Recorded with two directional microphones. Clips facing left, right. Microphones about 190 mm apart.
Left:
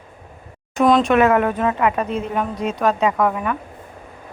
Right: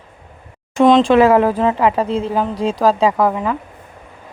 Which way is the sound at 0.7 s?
25° right (ahead or behind).